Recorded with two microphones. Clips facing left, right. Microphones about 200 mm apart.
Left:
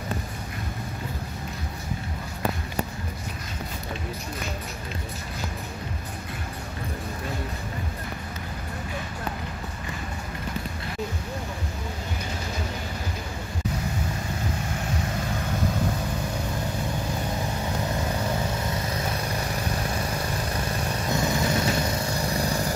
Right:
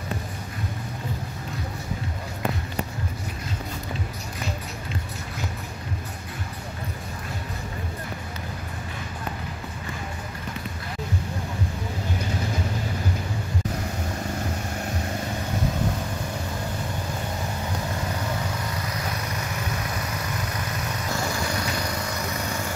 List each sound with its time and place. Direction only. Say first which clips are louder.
19.7 s vehicle: left 2 dB; 30° left (ahead or behind)